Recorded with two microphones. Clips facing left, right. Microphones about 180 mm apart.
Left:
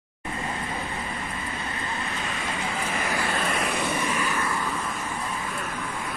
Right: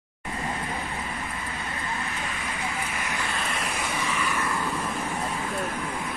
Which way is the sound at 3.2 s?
60° left (ahead or behind).